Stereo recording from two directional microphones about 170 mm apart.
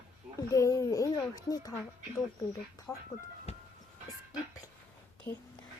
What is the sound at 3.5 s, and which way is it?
Music, 40° left (ahead or behind).